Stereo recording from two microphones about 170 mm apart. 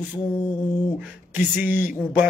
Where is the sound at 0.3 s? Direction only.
15° left (ahead or behind).